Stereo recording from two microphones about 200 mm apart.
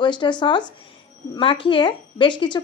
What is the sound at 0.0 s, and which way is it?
A woman's voice, 25° left (ahead or behind).